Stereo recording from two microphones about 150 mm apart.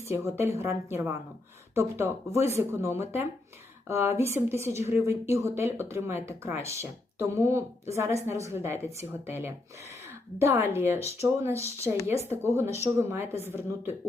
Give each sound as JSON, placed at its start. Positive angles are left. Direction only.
{"t": 0.1, "sound": "a woman's voice", "side_deg": -15}